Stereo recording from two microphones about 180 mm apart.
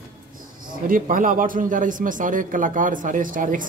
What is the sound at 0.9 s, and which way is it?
Speech, 50° right (ahead or behind).